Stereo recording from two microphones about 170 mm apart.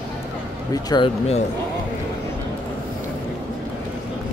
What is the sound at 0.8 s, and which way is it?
Speech, 25° left (ahead or behind).